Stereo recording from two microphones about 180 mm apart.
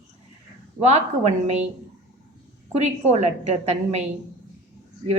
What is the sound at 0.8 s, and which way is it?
Speech, 35° right (ahead or behind).